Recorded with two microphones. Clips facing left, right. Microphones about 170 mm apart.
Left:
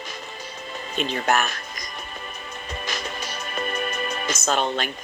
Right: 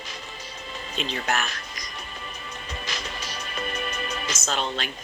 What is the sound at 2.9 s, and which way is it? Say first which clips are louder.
Music: left 4 dB; 50° left (ahead or behind).